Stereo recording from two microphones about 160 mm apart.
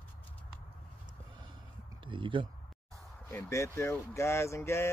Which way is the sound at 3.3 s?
15° left (ahead or behind).